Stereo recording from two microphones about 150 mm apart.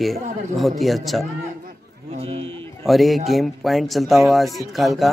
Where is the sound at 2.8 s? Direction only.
Centre (ahead or behind).